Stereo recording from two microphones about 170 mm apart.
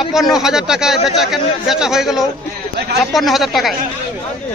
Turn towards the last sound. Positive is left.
turn(degrees=0)  # may be behind; listen again after turning